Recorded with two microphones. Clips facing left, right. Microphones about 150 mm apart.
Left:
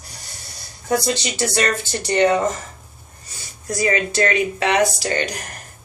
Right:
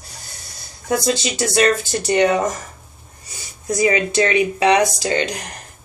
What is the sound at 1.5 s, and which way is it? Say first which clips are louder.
Speech: right 8 dB; 15° right (ahead or behind).